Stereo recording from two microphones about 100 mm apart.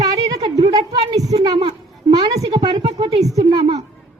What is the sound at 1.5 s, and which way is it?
Speech, 90° right.